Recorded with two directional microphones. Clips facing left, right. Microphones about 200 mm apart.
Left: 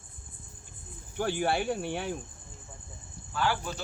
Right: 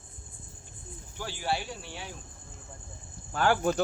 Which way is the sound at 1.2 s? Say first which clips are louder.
Left 5 dB; 55° left (ahead or behind).